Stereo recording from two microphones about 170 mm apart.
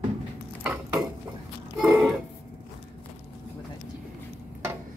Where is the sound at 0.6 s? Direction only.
5° right (ahead or behind).